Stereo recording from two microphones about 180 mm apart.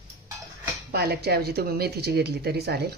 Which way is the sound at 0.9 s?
60° right (ahead or behind).